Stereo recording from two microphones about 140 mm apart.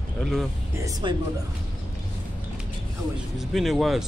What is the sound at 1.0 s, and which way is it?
Speech, 30° right (ahead or behind).